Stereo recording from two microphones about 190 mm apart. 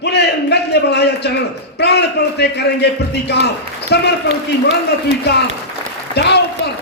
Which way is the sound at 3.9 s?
60° left (ahead or behind).